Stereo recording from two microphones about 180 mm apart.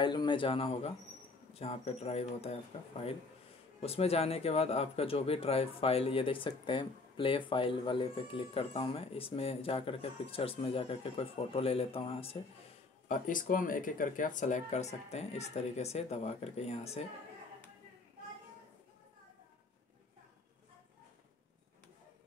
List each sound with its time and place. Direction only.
0.0 s a man's voice: 25° left (ahead or behind)
13.1 s speech: 50° left (ahead or behind)